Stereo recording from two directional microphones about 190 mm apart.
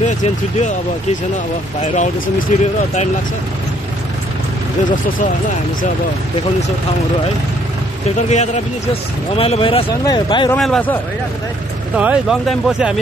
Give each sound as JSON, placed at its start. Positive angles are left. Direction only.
{"t": 0.0, "sound": "speech", "side_deg": 40}
{"t": 1.8, "sound": "speech", "side_deg": 40}
{"t": 8.2, "sound": "speech", "side_deg": 35}
{"t": 10.5, "sound": "a man's voice", "side_deg": 5}
{"t": 11.9, "sound": "speech", "side_deg": -5}